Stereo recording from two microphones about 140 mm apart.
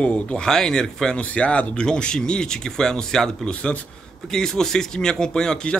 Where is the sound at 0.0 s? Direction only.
10° left (ahead or behind).